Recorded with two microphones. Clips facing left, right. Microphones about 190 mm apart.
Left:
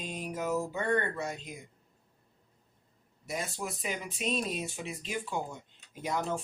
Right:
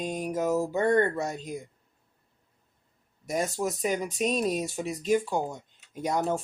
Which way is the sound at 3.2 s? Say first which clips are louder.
Right 8 dB; 45° right (ahead or behind).